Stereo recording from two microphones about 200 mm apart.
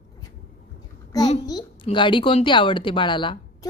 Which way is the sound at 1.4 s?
20° left (ahead or behind).